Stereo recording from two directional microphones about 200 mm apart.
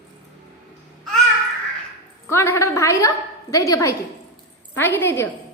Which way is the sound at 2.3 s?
10° left (ahead or behind).